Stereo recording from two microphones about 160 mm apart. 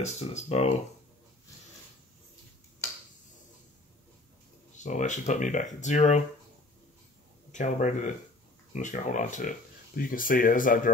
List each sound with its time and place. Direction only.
0.0 s speech: 45° left (ahead or behind)
4.7 s speech: 50° left (ahead or behind)
7.5 s speech: 50° left (ahead or behind)